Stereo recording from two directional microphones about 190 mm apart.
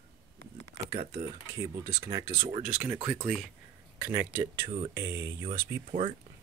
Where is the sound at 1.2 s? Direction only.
15° right (ahead or behind).